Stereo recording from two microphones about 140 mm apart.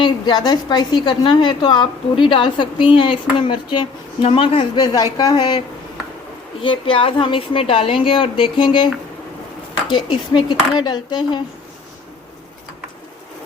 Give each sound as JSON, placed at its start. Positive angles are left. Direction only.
{"t": 0.0, "sound": "a woman's voice", "side_deg": 30}